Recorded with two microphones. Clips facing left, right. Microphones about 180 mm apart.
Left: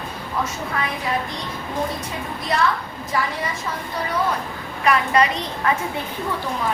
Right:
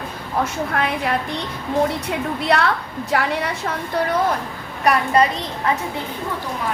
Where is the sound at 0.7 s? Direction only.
65° right (ahead or behind).